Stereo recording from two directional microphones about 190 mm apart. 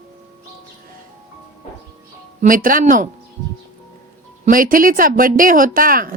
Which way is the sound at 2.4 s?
45° right (ahead or behind).